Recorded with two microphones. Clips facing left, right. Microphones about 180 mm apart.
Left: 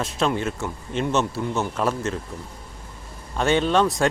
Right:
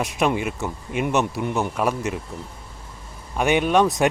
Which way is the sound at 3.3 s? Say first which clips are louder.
Right 1 dB; 15° right (ahead or behind).